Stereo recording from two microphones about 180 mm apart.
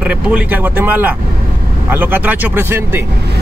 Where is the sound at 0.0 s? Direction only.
10° right (ahead or behind).